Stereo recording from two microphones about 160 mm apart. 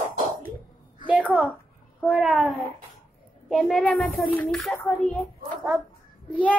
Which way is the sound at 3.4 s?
Centre (ahead or behind).